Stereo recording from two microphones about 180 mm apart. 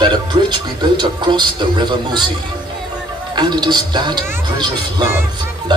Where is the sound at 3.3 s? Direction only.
25° right (ahead or behind).